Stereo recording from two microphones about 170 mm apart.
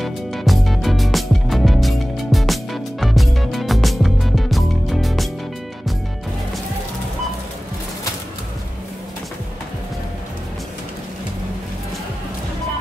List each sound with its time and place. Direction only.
0.0 s music: centre (ahead or behind)